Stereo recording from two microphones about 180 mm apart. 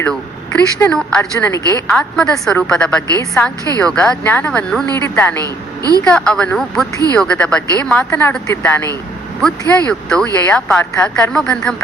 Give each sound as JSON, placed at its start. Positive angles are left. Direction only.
{"t": 0.0, "sound": "a woman's voice", "side_deg": 5}
{"t": 5.4, "sound": "a woman's voice", "side_deg": -20}
{"t": 6.1, "sound": "a woman's voice", "side_deg": 5}